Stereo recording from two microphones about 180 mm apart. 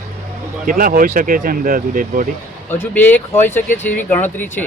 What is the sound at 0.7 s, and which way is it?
Speech, 50° right (ahead or behind).